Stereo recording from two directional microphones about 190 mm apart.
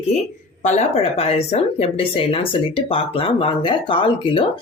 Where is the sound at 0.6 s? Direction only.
35° left (ahead or behind).